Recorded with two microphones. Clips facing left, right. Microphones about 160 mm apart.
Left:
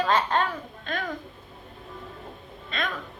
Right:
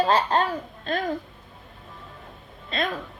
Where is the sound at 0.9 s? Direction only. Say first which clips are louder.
Right 5 dB; 35° right (ahead or behind).